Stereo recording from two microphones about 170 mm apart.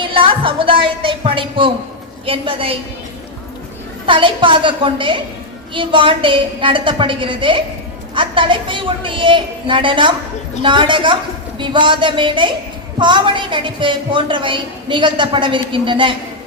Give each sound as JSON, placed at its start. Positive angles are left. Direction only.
{"t": 0.0, "sound": "a woman's voice", "side_deg": -30}
{"t": 4.0, "sound": "a woman's voice", "side_deg": -30}